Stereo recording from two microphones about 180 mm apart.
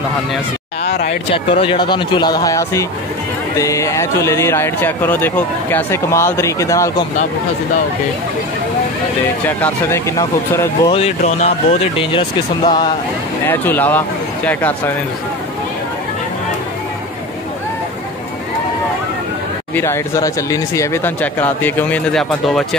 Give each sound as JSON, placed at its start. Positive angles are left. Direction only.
{"t": 0.8, "sound": "a sound", "side_deg": 65}
{"t": 1.3, "sound": "speech", "side_deg": 30}
{"t": 9.6, "sound": "speech", "side_deg": 15}
{"t": 10.9, "sound": "speech", "side_deg": 35}
{"t": 13.5, "sound": "speech", "side_deg": 10}
{"t": 19.7, "sound": "speech", "side_deg": 15}